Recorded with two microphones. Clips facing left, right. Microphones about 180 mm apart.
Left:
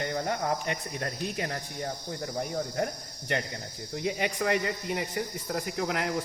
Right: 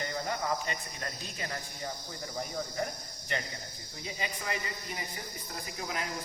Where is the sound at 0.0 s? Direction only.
55° left (ahead or behind).